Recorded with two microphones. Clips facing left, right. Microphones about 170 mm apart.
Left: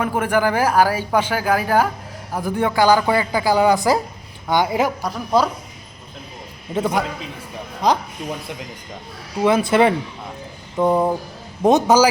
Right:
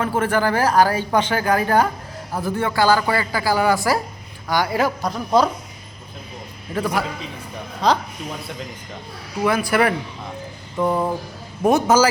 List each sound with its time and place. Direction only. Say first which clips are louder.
0.0 s speech: left 1 dB; 10° left (ahead or behind)
5.0 s speech: right 1 dB; 10° left (ahead or behind)
6.7 s speech: left 2 dB; 25° left (ahead or behind)
9.4 s speech: left 3 dB; 25° left (ahead or behind)